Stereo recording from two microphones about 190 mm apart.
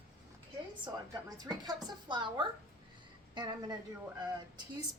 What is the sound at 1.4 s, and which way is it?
A woman's voice, 20° right (ahead or behind).